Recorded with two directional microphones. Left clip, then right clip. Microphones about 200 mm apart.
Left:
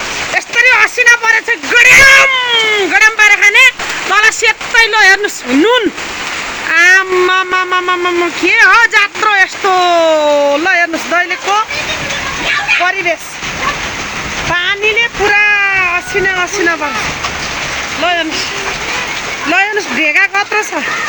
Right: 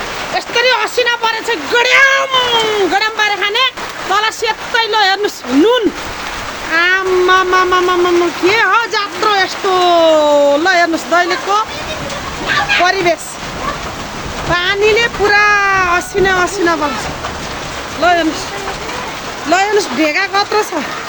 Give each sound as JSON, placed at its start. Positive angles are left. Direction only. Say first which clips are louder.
{"t": 0.3, "sound": "speech", "louder": "left 4 dB", "side_deg": -5}
{"t": 9.6, "sound": "speech", "louder": "right 1 dB", "side_deg": 30}
{"t": 10.2, "sound": "speech", "louder": "even", "side_deg": 0}
{"t": 12.8, "sound": "speech", "louder": "right 1 dB", "side_deg": 0}
{"t": 14.5, "sound": "speech", "louder": "right 1 dB", "side_deg": 0}
{"t": 18.0, "sound": "speech", "louder": "right 2 dB", "side_deg": 0}
{"t": 19.5, "sound": "speech", "louder": "even", "side_deg": 0}